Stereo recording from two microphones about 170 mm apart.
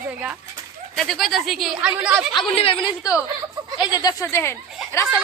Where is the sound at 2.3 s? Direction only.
35° left (ahead or behind).